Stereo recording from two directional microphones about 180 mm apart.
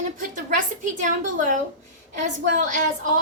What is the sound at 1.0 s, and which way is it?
A woman's voice, 45° right (ahead or behind).